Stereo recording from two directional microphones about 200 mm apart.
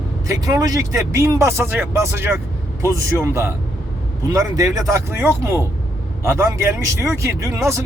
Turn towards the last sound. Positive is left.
turn(degrees=-15)  # may be behind; listen again after turning